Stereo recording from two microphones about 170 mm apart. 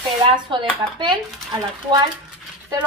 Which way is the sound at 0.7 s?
25° right (ahead or behind).